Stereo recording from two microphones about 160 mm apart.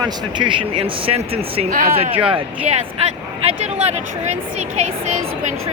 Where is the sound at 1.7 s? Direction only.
60° right (ahead or behind).